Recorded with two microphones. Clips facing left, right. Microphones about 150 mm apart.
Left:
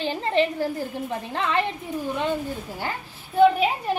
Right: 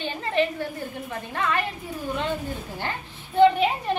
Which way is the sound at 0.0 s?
30° left (ahead or behind).